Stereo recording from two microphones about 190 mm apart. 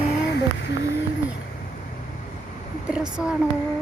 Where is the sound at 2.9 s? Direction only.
5° right (ahead or behind).